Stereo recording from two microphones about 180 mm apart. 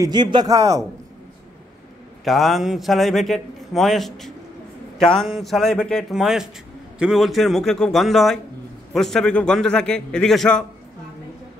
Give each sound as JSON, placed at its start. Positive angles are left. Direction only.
{"t": 0.0, "sound": "a man's voice", "side_deg": -25}
{"t": 2.2, "sound": "a man's voice", "side_deg": 0}